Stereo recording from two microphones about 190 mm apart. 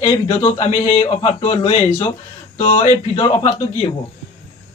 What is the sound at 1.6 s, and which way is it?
Speech, 20° left (ahead or behind).